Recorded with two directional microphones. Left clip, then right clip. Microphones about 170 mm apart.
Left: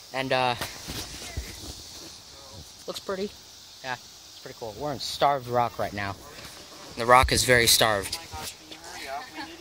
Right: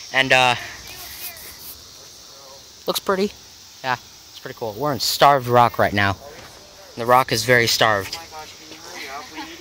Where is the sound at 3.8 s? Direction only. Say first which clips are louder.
Right 10 dB; 45° right (ahead or behind).